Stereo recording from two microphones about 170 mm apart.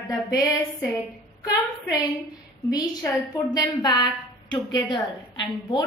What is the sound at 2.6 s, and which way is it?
A woman's voice, 20° left (ahead or behind).